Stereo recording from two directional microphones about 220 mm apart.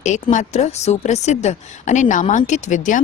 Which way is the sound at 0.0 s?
35° left (ahead or behind).